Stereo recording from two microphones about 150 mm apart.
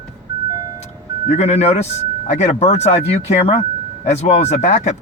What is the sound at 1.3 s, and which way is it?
Speech, 45° left (ahead or behind).